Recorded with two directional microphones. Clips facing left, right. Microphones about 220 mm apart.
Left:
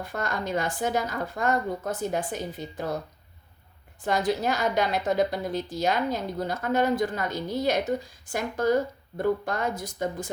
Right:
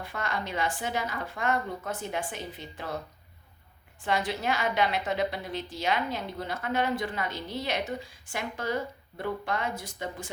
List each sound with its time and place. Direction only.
0.0 s a woman's voice: 40° left (ahead or behind)
4.0 s a woman's voice: 40° left (ahead or behind)